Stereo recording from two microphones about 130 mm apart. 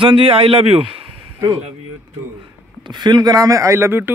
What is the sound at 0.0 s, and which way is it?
A man's voice, 45° right (ahead or behind).